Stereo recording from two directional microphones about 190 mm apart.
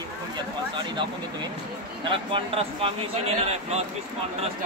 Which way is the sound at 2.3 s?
30° right (ahead or behind).